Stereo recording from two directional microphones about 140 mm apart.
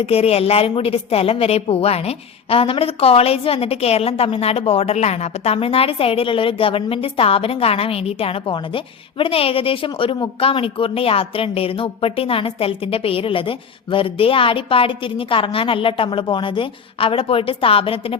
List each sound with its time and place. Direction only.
0.0 s a woman's voice: 45° left (ahead or behind)